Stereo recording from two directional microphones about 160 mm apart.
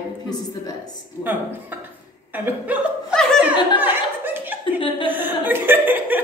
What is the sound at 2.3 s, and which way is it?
Speech, 10° right (ahead or behind).